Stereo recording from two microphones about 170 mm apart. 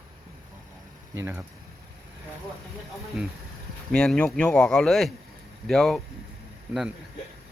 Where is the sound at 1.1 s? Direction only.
10° right (ahead or behind).